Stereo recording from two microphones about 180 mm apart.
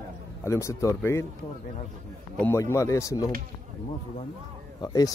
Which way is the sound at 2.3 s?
15° left (ahead or behind).